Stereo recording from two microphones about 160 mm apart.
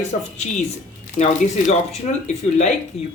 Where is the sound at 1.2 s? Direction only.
45° left (ahead or behind).